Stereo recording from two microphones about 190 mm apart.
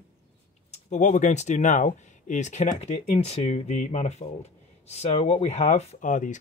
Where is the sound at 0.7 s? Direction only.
35° left (ahead or behind).